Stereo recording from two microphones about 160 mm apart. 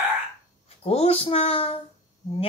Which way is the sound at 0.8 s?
40° left (ahead or behind).